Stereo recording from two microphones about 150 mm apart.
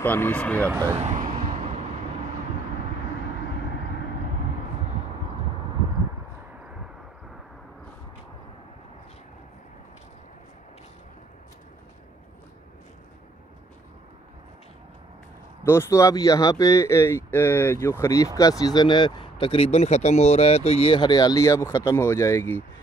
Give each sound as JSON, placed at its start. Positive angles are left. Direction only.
{"t": 0.0, "sound": "speech", "side_deg": 10}
{"t": 0.7, "sound": "speech", "side_deg": -20}
{"t": 0.9, "sound": "vehicle", "side_deg": -45}
{"t": 15.6, "sound": "speech", "side_deg": 15}